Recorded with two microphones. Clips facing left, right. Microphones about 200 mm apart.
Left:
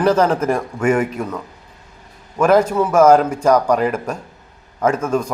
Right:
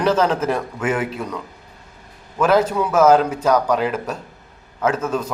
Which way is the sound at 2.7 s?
10° left (ahead or behind).